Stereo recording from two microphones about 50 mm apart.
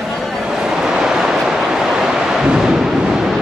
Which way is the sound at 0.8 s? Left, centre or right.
Centre.